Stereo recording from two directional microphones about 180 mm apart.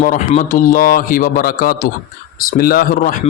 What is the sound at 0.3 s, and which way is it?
Speech, 45° left (ahead or behind).